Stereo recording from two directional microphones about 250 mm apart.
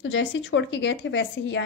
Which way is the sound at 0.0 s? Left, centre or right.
Left.